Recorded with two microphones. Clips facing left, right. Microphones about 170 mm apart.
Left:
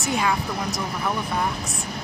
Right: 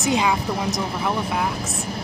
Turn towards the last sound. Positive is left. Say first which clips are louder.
# right 3 dB
turn(degrees=-20)  # may be behind; listen again after turning